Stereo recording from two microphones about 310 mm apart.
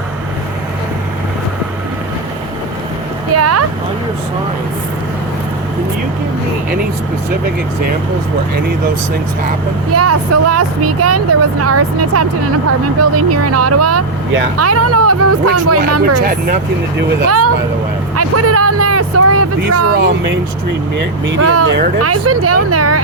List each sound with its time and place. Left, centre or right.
3.3 s speech: right
9.9 s speech: right
17.2 s speech: right
18.2 s vehicle: right
21.4 s speech: right